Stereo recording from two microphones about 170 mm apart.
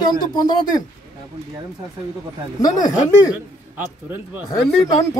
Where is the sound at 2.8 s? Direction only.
50° left (ahead or behind).